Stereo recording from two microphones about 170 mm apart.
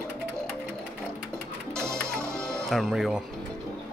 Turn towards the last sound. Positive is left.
turn(degrees=0)  # may be behind; listen again after turning